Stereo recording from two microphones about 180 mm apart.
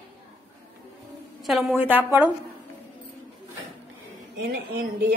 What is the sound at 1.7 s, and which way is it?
Speech, 10° right (ahead or behind).